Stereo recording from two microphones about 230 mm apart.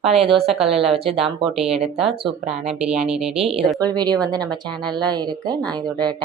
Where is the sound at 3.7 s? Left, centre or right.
Centre.